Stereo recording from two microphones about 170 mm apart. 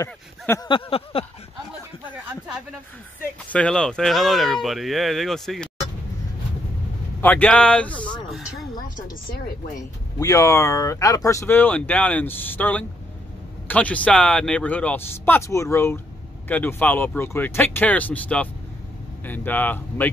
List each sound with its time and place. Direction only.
0.0 s a sound: 20° left (ahead or behind)
3.4 s speech: 5° left (ahead or behind)
7.2 s speech: 10° left (ahead or behind)
10.1 s speech: 20° left (ahead or behind)